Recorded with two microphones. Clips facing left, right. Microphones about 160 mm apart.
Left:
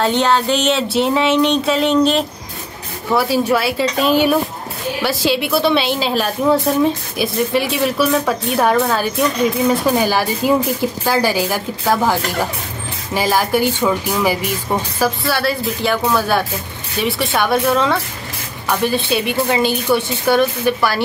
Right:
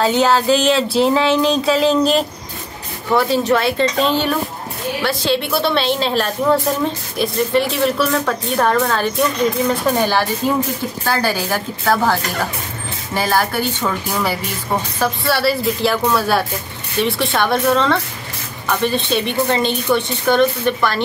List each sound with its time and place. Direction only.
0.0 s a woman's voice: centre (ahead or behind)
15.0 s a woman's voice: centre (ahead or behind)